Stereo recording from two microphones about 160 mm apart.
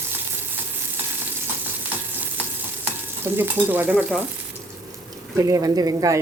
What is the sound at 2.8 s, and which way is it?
Stir, 15° right (ahead or behind).